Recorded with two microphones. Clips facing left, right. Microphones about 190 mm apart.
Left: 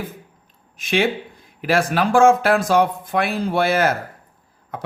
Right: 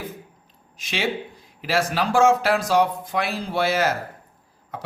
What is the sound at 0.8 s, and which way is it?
A man's voice, 55° left (ahead or behind).